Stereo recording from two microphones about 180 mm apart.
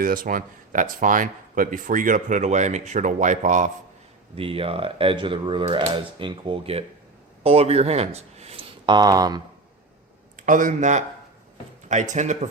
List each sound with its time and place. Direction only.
0.0 s speech: 50° right (ahead or behind)
4.4 s speech: 30° right (ahead or behind)
10.3 s speech: 45° right (ahead or behind)